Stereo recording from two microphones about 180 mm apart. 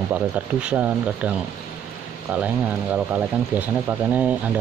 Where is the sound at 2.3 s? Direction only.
10° right (ahead or behind).